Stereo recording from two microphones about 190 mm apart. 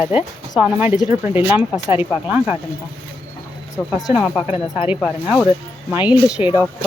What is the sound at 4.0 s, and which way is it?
Speech, 5° right (ahead or behind).